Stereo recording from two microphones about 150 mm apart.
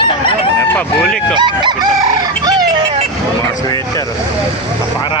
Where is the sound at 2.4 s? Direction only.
25° right (ahead or behind).